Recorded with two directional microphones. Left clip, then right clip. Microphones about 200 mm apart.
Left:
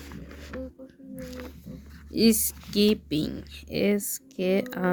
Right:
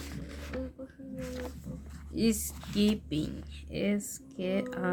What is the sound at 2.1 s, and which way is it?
Speech, 45° left (ahead or behind).